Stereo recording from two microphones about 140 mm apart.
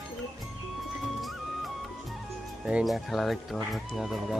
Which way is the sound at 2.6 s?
5° right (ahead or behind).